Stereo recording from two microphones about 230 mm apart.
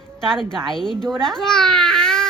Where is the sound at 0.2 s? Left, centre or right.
Centre.